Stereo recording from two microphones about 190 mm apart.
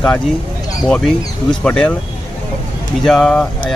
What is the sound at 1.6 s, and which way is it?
Speech, 5° left (ahead or behind).